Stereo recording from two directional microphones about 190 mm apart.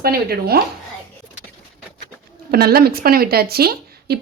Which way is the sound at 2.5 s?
55° right (ahead or behind).